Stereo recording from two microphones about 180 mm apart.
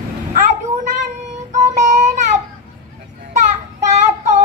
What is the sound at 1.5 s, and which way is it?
Music, 40° right (ahead or behind).